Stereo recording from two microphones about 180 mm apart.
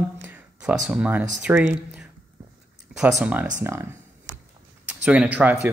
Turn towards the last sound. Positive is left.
turn(degrees=-10)  # may be behind; listen again after turning